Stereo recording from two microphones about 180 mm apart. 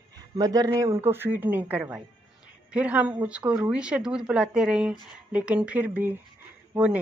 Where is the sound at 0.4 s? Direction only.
20° right (ahead or behind).